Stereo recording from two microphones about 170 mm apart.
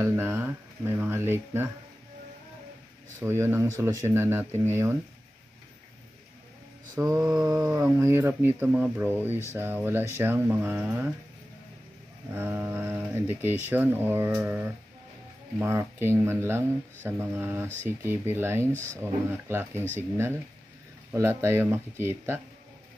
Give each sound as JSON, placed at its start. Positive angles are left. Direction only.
{"t": 0.0, "sound": "speech", "side_deg": -15}
{"t": 3.2, "sound": "speech", "side_deg": -15}
{"t": 7.0, "sound": "mantra", "side_deg": -20}
{"t": 7.4, "sound": "speech", "side_deg": -20}
{"t": 12.4, "sound": "speech", "side_deg": -15}